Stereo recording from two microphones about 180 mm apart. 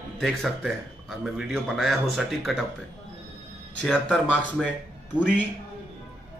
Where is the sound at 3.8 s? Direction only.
5° left (ahead or behind).